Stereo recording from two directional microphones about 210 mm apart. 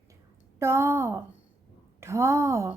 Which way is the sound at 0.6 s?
15° right (ahead or behind).